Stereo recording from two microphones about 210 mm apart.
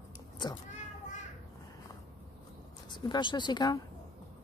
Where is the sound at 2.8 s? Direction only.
20° left (ahead or behind).